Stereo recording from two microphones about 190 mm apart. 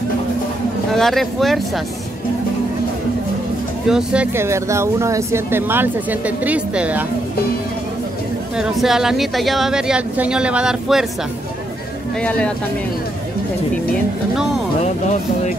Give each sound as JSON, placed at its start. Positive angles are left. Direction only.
{"t": 0.9, "sound": "speech", "side_deg": 0}
{"t": 3.8, "sound": "speech", "side_deg": -5}
{"t": 8.5, "sound": "speech", "side_deg": 0}
{"t": 12.2, "sound": "speech", "side_deg": 5}
{"t": 14.8, "sound": "speech", "side_deg": 40}